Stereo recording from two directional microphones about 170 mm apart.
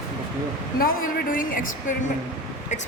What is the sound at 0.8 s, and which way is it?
Speech, 55° left (ahead or behind).